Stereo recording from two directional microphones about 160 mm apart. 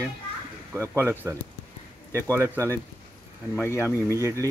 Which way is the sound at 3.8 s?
20° right (ahead or behind).